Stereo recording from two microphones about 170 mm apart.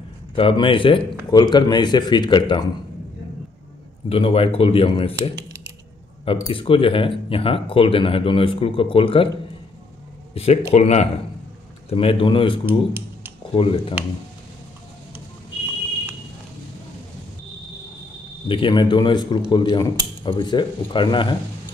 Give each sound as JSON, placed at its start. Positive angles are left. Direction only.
{"t": 0.4, "sound": "speech", "side_deg": 30}
{"t": 4.1, "sound": "speech", "side_deg": 35}
{"t": 5.3, "sound": "typing", "side_deg": -15}
{"t": 6.2, "sound": "speech", "side_deg": 30}
{"t": 10.3, "sound": "speech", "side_deg": 35}
{"t": 13.6, "sound": "speech", "side_deg": 30}
{"t": 18.5, "sound": "speech", "side_deg": 30}